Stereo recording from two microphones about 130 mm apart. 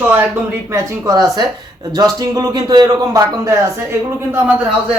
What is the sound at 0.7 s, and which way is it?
A man's voice, 25° right (ahead or behind).